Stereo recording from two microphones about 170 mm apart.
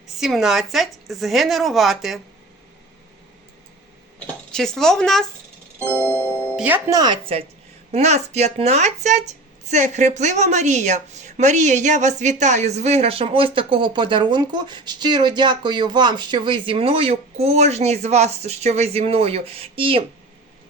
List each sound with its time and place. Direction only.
0.2 s speech: centre (ahead or behind)
4.5 s speech: 5° left (ahead or behind)
6.4 s music: 10° right (ahead or behind)
6.9 s a woman's voice: 25° right (ahead or behind)